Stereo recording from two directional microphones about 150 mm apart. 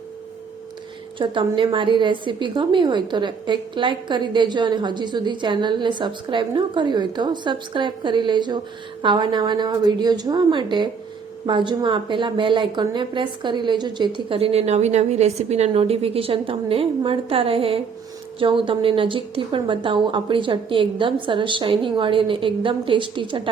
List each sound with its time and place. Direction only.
1.2 s a woman's voice: 35° right (ahead or behind)